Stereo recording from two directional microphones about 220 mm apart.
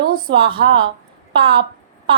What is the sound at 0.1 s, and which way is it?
A woman's voice, 20° right (ahead or behind).